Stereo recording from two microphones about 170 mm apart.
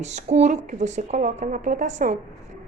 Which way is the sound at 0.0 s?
40° right (ahead or behind).